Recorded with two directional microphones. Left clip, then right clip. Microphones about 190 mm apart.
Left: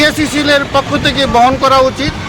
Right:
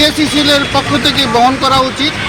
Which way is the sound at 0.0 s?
30° left (ahead or behind).